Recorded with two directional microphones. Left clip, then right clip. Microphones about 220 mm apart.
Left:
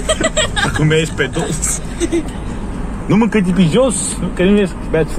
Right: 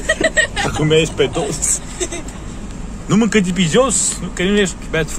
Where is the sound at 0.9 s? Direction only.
90° right.